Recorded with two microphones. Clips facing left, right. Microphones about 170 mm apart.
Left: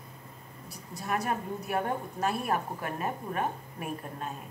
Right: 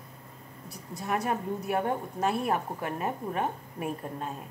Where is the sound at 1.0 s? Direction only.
20° right (ahead or behind).